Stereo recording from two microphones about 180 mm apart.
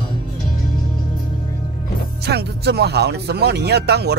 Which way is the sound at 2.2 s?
65° right (ahead or behind).